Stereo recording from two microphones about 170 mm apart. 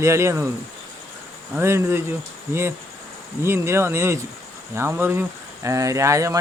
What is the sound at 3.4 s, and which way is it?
Speech, 15° right (ahead or behind).